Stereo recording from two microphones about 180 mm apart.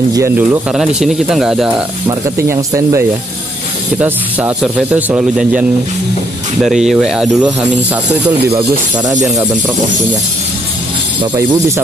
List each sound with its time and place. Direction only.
0.4 s speech: 5° right (ahead or behind)
2.0 s speech: 15° right (ahead or behind)
8.5 s speech: 25° right (ahead or behind)
11.1 s speech: 20° right (ahead or behind)